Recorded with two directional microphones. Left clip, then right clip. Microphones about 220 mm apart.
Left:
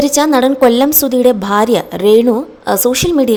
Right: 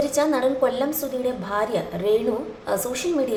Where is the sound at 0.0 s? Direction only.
45° left (ahead or behind).